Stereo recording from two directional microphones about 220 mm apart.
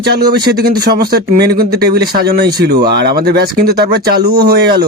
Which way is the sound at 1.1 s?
45° right (ahead or behind).